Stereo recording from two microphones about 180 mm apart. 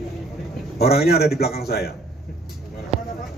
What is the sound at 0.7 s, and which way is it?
Speech, 60° left (ahead or behind).